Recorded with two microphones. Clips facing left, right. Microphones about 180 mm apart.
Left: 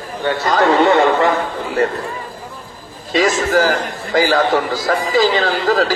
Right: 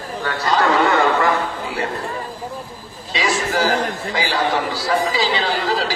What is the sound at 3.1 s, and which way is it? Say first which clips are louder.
A man's voice: left 6 dB; 45° left (ahead or behind).